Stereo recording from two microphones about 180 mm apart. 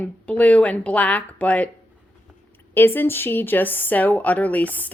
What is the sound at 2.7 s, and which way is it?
Speech, 10° left (ahead or behind).